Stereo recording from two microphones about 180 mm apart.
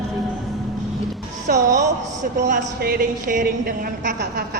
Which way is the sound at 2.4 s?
50° right (ahead or behind).